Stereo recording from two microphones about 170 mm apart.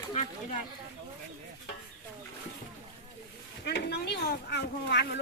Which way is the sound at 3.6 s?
75° left (ahead or behind).